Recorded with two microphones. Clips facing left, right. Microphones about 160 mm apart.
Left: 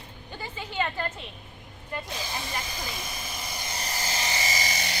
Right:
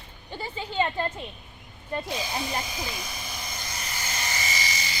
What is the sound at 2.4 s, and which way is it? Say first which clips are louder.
Speech: right 3 dB; centre (ahead or behind).